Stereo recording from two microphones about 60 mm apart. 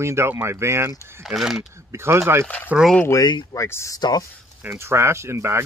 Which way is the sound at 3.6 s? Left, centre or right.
Left.